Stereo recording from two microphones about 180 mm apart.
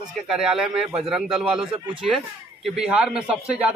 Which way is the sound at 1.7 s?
30° right (ahead or behind).